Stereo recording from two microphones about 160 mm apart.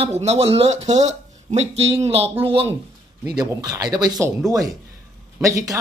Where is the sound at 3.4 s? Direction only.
25° right (ahead or behind).